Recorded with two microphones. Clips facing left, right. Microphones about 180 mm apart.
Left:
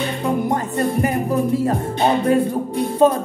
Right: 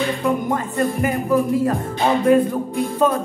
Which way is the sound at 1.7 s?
25° left (ahead or behind).